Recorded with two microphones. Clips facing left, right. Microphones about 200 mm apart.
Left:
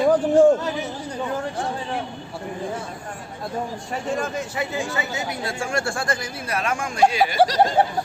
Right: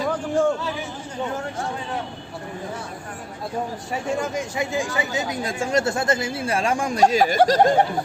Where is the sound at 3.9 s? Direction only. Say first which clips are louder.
Right 1 dB; 10° right (ahead or behind); by 7.0 s 35° right (ahead or behind).